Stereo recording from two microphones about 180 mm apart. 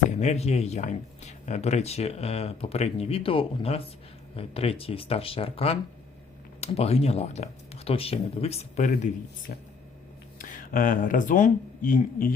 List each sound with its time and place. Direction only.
0.2 s speech: 35° left (ahead or behind)
9.5 s speech: 55° left (ahead or behind)